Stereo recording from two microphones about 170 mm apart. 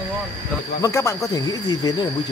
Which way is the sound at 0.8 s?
15° left (ahead or behind).